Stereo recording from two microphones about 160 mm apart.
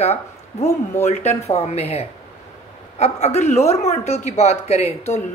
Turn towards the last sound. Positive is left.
turn(degrees=40)  # may be behind; listen again after turning